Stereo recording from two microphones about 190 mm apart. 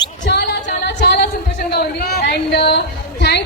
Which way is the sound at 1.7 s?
60° left (ahead or behind).